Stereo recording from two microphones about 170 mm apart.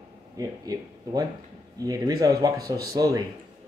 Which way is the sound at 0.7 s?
20° right (ahead or behind).